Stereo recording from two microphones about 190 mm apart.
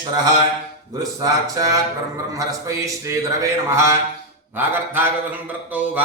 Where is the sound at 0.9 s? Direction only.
20° right (ahead or behind).